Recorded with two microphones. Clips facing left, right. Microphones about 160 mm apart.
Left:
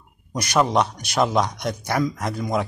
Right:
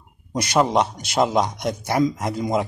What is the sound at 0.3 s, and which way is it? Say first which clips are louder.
A man's voice: right 1 dB; 25° right (ahead or behind).